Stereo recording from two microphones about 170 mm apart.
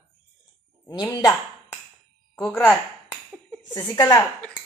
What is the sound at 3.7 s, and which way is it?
Speech, 25° left (ahead or behind).